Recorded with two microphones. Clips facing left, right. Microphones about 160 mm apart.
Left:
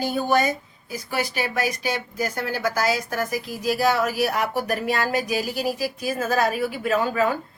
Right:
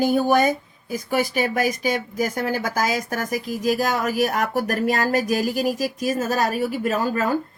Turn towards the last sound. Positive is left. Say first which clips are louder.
# even
turn(degrees=-40)  # may be behind; listen again after turning